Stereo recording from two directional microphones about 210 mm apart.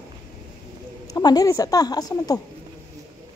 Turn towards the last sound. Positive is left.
turn(degrees=20)  # may be behind; listen again after turning